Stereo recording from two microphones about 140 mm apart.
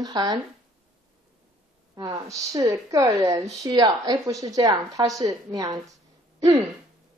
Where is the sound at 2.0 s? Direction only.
30° right (ahead or behind).